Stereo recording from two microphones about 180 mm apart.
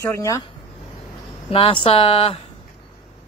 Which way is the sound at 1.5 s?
30° left (ahead or behind).